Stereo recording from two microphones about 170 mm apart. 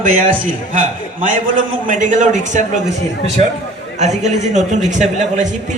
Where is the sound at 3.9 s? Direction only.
40° right (ahead or behind).